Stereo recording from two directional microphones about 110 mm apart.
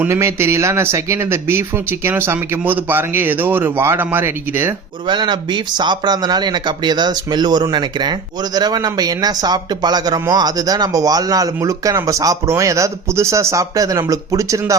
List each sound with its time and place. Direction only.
0.1 s speech: 25° right (ahead or behind)
5.0 s speech: 45° right (ahead or behind)